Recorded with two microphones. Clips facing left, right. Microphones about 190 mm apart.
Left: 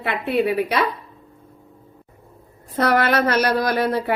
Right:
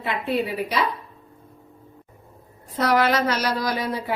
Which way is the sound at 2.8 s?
55° left (ahead or behind).